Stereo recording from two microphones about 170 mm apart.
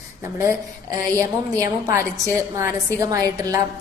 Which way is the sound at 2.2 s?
15° right (ahead or behind).